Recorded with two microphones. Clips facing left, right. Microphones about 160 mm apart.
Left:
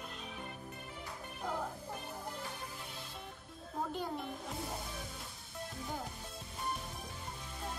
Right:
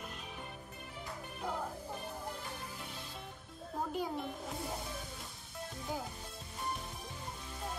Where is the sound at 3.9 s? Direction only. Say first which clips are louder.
Right 2 dB; 5° right (ahead or behind).